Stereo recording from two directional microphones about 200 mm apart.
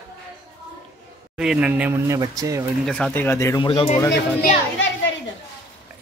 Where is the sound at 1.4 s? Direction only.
5° right (ahead or behind).